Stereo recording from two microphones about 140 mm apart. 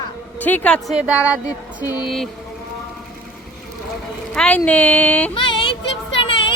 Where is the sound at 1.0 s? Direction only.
10° right (ahead or behind).